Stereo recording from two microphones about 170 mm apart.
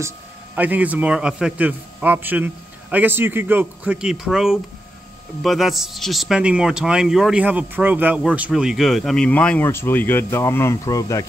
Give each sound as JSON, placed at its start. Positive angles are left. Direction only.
{"t": 0.6, "sound": "a man's voice", "side_deg": -10}